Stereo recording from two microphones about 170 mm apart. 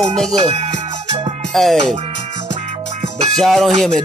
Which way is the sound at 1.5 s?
Centre (ahead or behind).